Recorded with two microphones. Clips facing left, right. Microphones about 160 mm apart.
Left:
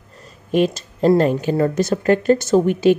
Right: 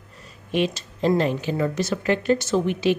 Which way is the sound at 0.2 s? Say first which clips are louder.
Left 6 dB; 45° left (ahead or behind).